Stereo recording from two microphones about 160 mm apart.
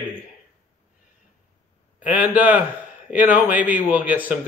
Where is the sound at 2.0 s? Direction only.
10° right (ahead or behind).